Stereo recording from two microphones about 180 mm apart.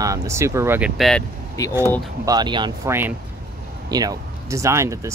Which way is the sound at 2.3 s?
25° right (ahead or behind).